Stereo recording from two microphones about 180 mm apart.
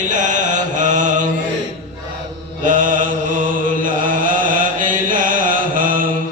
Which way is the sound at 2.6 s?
45° right (ahead or behind).